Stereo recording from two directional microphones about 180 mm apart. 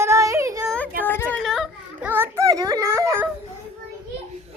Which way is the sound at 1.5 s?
Centre (ahead or behind).